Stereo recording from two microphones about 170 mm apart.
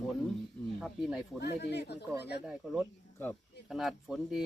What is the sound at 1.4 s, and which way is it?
Speech, 75° left (ahead or behind).